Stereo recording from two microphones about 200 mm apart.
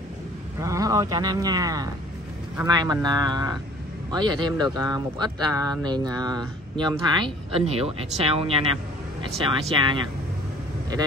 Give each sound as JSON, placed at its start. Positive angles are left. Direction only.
{"t": 0.6, "sound": "speech", "side_deg": -15}